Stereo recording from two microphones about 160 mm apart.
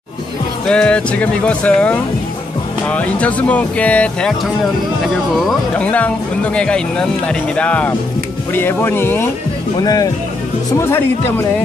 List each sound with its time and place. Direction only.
0.7 s speech: 5° left (ahead or behind)
5.3 s speech: 5° left (ahead or behind)